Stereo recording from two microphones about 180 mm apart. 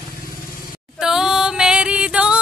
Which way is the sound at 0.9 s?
5° right (ahead or behind).